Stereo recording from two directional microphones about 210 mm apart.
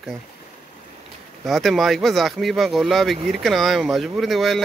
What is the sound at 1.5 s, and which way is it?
Speech, centre (ahead or behind).